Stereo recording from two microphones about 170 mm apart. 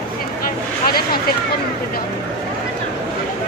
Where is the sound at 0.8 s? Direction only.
60° left (ahead or behind).